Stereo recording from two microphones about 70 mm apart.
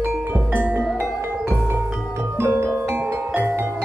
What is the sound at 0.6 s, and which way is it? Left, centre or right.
Music, right.